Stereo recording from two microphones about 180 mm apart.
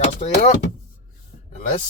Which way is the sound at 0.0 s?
35° left (ahead or behind).